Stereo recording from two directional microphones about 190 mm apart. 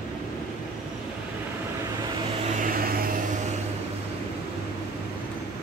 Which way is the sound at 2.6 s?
50° right (ahead or behind).